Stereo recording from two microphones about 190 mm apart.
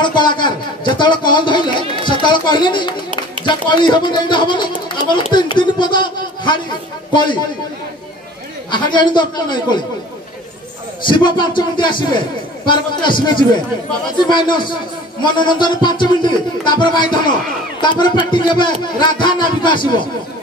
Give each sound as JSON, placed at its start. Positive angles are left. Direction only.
{"t": 0.0, "sound": "a man's voice", "side_deg": 25}
{"t": 8.6, "sound": "speech", "side_deg": 25}
{"t": 11.1, "sound": "speech", "side_deg": 25}
{"t": 14.3, "sound": "speech", "side_deg": 25}